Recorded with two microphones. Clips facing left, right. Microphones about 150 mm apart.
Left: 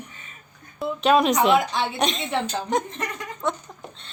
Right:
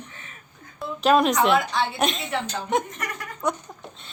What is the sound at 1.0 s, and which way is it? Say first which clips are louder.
A woman's voice: even; centre (ahead or behind).